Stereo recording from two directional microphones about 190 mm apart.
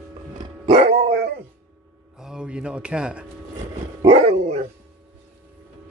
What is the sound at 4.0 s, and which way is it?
Dog, 30° right (ahead or behind).